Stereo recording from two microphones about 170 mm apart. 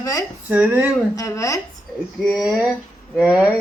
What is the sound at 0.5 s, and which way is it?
Speech, 10° right (ahead or behind).